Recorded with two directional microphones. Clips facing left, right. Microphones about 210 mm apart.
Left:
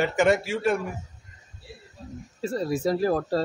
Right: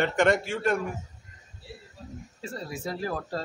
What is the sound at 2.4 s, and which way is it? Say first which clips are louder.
Speech: left 10 dB; 40° left (ahead or behind).